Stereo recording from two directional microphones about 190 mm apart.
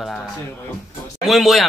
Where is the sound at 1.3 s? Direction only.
Centre (ahead or behind).